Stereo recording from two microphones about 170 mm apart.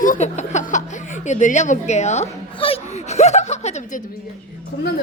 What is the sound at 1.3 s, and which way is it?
Speech, 45° left (ahead or behind).